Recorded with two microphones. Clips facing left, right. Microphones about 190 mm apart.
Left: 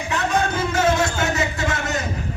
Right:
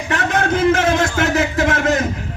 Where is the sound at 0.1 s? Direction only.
90° right.